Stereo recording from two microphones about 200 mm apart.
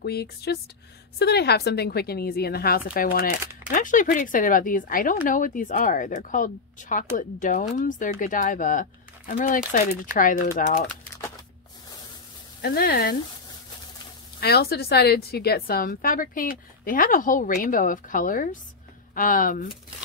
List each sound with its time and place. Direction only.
0.0 s a woman's voice: 55° left (ahead or behind)
10.9 s a sound: 15° left (ahead or behind)
12.6 s a woman's voice: 50° left (ahead or behind)
14.4 s a woman's voice: 50° left (ahead or behind)